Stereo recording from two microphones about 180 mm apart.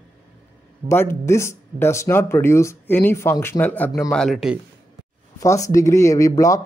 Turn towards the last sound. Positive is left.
turn(degrees=20)  # may be behind; listen again after turning